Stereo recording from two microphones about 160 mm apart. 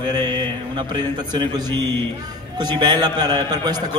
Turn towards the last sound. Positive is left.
turn(degrees=-25)  # may be behind; listen again after turning